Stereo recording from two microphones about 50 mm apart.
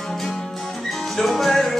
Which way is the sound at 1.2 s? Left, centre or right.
Centre.